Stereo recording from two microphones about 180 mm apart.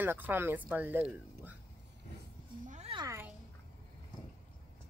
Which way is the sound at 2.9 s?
25° right (ahead or behind).